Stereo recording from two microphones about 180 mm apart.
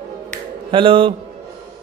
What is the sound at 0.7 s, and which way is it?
Speech, 30° right (ahead or behind).